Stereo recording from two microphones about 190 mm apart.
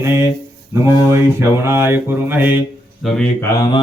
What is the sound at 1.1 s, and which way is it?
Mantra, 15° right (ahead or behind).